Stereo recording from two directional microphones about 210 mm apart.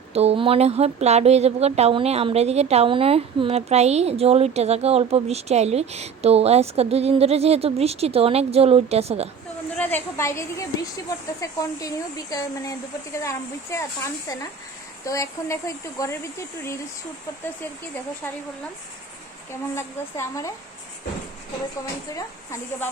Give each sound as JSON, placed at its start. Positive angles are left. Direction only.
{"t": 0.1, "sound": "speech", "side_deg": -30}
{"t": 9.7, "sound": "speech", "side_deg": 10}
{"t": 19.7, "sound": "speech", "side_deg": 15}